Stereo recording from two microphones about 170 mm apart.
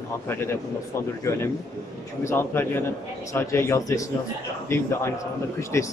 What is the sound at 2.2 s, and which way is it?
Speech, 15° left (ahead or behind).